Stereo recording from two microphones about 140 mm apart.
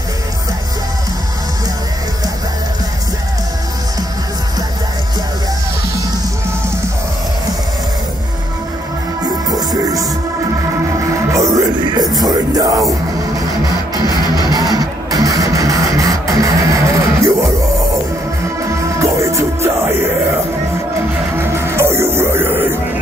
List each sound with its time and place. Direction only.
9.5 s music: 25° right (ahead or behind)
11.3 s music: 25° right (ahead or behind)
14.1 s music: 30° left (ahead or behind)
14.5 s music: 25° right (ahead or behind)
18.9 s music: 20° right (ahead or behind)
21.4 s music: 20° right (ahead or behind)